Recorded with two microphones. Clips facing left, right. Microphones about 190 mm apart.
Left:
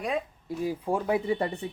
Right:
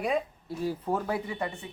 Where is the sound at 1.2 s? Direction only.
35° left (ahead or behind).